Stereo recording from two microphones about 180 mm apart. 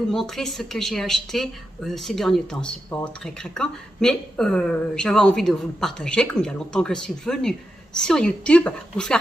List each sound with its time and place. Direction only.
0.1 s speech: centre (ahead or behind)